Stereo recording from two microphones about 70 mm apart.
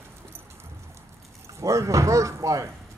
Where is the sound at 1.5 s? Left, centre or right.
Right.